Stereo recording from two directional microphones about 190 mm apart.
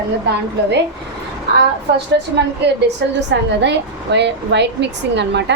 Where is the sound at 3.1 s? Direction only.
65° right (ahead or behind).